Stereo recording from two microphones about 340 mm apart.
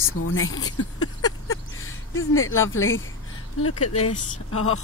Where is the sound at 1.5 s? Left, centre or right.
Left.